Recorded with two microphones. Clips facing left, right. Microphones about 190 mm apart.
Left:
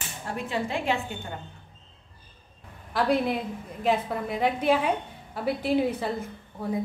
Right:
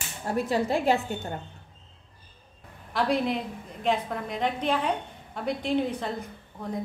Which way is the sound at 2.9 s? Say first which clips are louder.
Left 1 dB; centre (ahead or behind).